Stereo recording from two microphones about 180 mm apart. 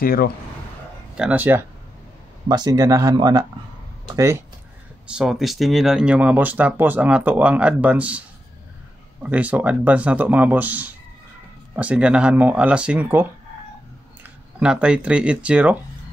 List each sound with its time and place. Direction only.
0.0 s speech: 55° left (ahead or behind)
1.1 s speech: 5° right (ahead or behind)
2.4 s speech: 20° right (ahead or behind)
5.1 s speech: 5° right (ahead or behind)
9.2 s speech: 10° right (ahead or behind)